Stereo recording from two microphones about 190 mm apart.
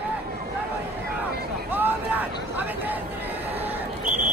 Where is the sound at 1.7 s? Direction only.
10° right (ahead or behind).